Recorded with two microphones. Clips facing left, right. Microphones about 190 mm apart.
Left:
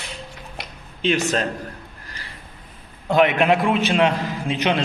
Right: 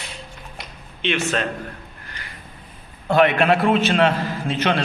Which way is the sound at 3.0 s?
15° left (ahead or behind).